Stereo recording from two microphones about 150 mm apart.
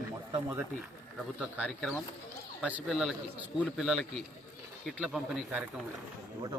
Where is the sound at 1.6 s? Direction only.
5° left (ahead or behind).